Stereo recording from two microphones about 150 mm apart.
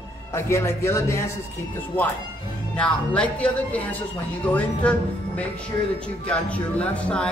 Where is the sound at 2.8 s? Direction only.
10° left (ahead or behind).